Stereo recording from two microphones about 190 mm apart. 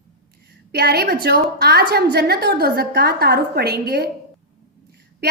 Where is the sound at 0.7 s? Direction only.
55° right (ahead or behind).